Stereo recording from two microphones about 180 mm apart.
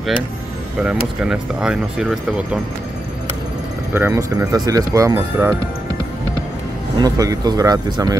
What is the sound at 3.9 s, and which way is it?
Speech, 15° right (ahead or behind).